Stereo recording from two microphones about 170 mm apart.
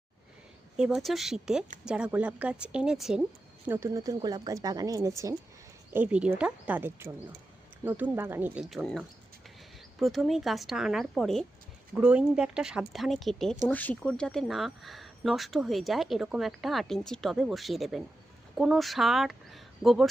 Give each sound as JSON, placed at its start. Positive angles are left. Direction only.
{"t": 0.8, "sound": "speech", "side_deg": 0}
{"t": 3.7, "sound": "speech", "side_deg": -15}